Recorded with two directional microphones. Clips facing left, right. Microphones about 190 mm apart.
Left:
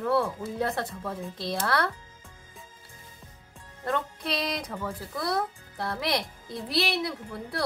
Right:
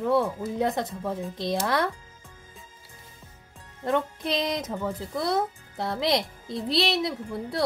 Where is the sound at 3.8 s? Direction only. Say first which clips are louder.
Right 4 dB; 20° right (ahead or behind).